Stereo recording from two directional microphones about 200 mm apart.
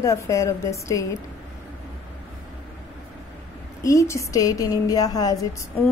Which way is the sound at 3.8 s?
15° left (ahead or behind).